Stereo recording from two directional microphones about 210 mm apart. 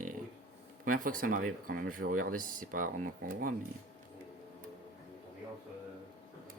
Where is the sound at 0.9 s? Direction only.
40° right (ahead or behind).